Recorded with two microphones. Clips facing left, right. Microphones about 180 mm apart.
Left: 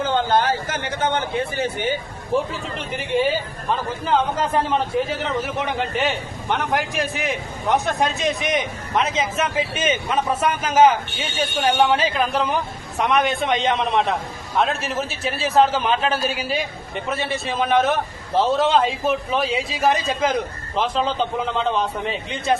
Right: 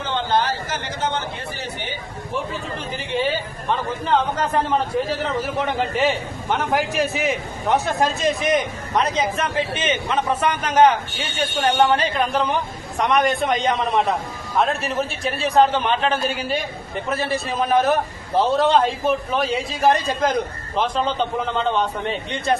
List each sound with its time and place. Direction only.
0.1 s a sound: 50° left (ahead or behind)
2.5 s a man's voice: 65° left (ahead or behind)
3.7 s a man's voice: centre (ahead or behind)